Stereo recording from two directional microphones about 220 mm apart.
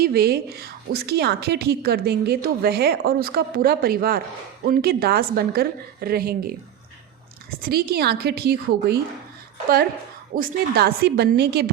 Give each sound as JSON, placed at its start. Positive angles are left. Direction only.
{"t": 0.0, "sound": "a woman's voice", "side_deg": -45}
{"t": 7.6, "sound": "a woman's voice", "side_deg": -45}
{"t": 10.3, "sound": "a woman's voice", "side_deg": -40}